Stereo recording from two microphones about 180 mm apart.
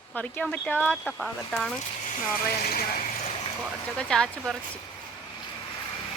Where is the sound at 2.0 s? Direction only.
50° left (ahead or behind).